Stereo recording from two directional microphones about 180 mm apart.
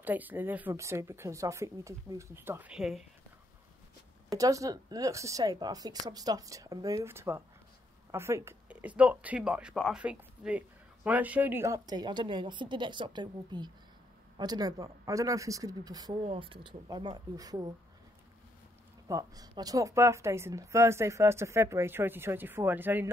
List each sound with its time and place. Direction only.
0.0 s speech: 10° right (ahead or behind)
4.4 s speech: 20° right (ahead or behind)
19.0 s speech: 20° right (ahead or behind)